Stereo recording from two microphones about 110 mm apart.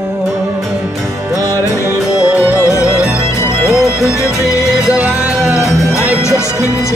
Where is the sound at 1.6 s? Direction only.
30° left (ahead or behind).